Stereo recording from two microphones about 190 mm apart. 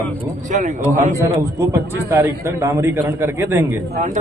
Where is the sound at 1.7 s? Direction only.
15° right (ahead or behind).